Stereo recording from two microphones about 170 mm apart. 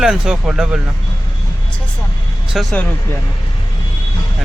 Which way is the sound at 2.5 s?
Centre (ahead or behind).